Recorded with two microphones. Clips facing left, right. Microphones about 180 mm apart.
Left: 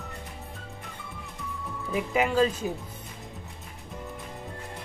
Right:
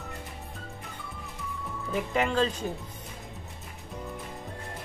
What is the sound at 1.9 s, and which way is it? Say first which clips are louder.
Speech: left 2 dB; 5° left (ahead or behind).